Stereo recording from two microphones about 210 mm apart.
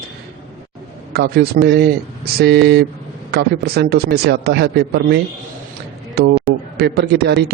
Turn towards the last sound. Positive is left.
turn(degrees=-50)  # may be behind; listen again after turning